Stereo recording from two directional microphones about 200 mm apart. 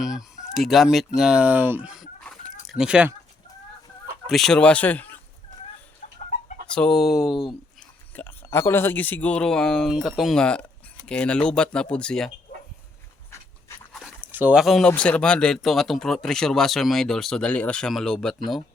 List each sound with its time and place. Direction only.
0.0 s speech: centre (ahead or behind)
4.3 s speech: centre (ahead or behind)
6.0 s chicken: 40° left (ahead or behind)
6.7 s speech: centre (ahead or behind)
8.1 s speech: 10° left (ahead or behind)
13.9 s speech: 5° right (ahead or behind)